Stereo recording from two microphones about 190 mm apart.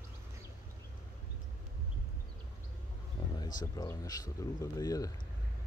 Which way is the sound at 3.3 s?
20° left (ahead or behind).